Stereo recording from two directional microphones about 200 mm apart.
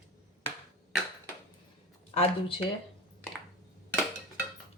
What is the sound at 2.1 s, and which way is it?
Speech, 30° left (ahead or behind).